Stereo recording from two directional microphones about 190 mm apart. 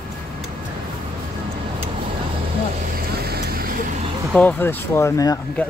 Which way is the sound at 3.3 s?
55° right (ahead or behind).